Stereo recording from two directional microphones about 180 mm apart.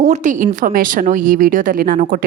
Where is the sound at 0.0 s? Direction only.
40° right (ahead or behind).